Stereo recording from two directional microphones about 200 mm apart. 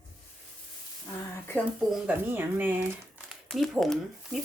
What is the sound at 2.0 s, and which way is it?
Speech, 10° right (ahead or behind).